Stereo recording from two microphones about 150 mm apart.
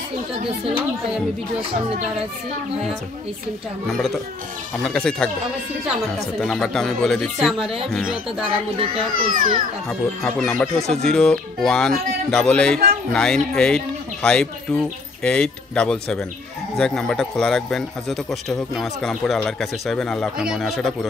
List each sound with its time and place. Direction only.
3.9 s a man's voice: centre (ahead or behind)
6.4 s a man's voice: 5° left (ahead or behind)
8.7 s a child's voice: 35° right (ahead or behind)
9.1 s a child's voice: 60° right (ahead or behind)
9.8 s a man's voice: 5° left (ahead or behind)